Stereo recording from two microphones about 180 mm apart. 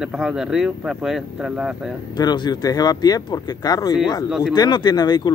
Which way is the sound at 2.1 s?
25° left (ahead or behind).